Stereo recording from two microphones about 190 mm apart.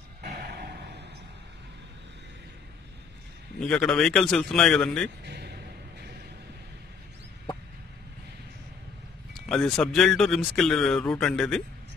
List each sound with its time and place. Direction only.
0.2 s a sound: 55° right (ahead or behind)
3.5 s speech: 5° left (ahead or behind)
5.2 s music: 60° right (ahead or behind)
9.3 s speech: 5° left (ahead or behind)